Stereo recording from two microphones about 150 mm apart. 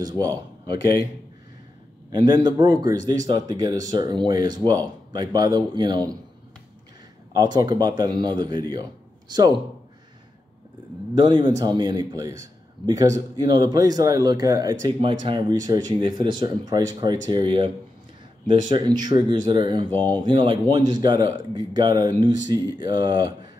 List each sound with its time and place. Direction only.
0.0 s speech: 25° right (ahead or behind)
2.1 s a man's voice: 30° right (ahead or behind)
7.3 s a man's voice: 30° right (ahead or behind)
11.1 s a man's voice: 30° right (ahead or behind)
18.7 s a man's voice: 30° right (ahead or behind)